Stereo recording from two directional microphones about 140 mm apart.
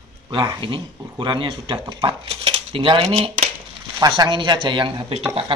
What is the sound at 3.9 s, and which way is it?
Speech, 30° right (ahead or behind).